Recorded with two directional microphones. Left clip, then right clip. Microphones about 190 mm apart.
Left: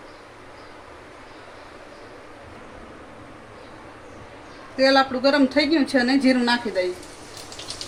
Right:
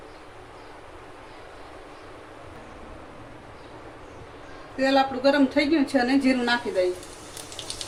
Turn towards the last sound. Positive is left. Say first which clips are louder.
# left 2 dB
turn(degrees=20)  # may be behind; listen again after turning